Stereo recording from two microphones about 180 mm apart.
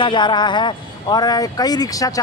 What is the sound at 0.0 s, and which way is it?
A man's voice, 25° left (ahead or behind).